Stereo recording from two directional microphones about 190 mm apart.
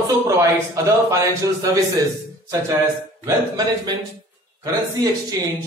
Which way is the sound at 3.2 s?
20° right (ahead or behind).